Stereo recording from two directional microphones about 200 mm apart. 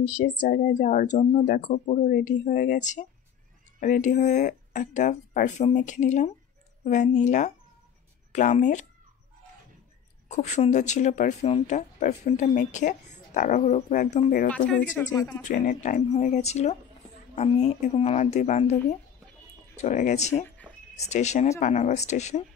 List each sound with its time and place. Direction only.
0.0 s speech: 40° left (ahead or behind)
10.2 s speech: 35° left (ahead or behind)
15.0 s speech: 10° left (ahead or behind)
15.5 s speech: 40° left (ahead or behind)
19.8 s speech: 40° left (ahead or behind)